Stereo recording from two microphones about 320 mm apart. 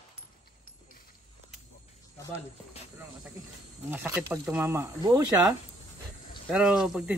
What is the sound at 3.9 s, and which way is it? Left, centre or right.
Speech, centre.